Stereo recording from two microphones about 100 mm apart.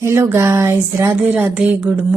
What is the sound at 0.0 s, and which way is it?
Speech, 25° right (ahead or behind).